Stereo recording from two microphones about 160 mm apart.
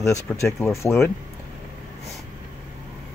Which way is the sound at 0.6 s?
15° left (ahead or behind).